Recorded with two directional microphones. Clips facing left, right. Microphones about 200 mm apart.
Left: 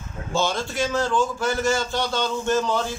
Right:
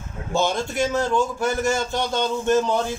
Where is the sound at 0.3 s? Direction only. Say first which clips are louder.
Right 2 dB; 20° right (ahead or behind).